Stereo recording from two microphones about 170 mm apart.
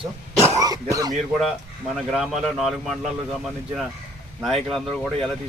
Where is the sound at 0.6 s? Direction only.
20° right (ahead or behind).